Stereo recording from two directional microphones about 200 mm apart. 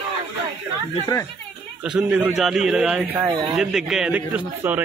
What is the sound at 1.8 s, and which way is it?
A man's voice, 5° right (ahead or behind).